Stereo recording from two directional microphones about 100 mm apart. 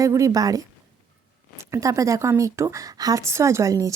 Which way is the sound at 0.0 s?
35° right (ahead or behind).